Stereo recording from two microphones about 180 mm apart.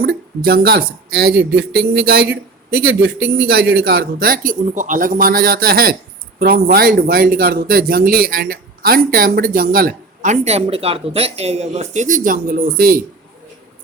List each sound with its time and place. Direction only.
0.0 s speech: 60° right (ahead or behind)